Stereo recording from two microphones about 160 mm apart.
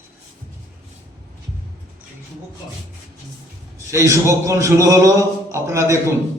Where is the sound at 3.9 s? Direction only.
20° right (ahead or behind).